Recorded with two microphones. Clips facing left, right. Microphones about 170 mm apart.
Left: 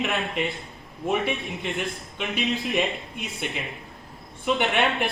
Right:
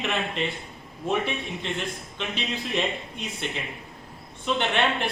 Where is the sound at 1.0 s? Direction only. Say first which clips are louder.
Left 1 dB; 15° left (ahead or behind).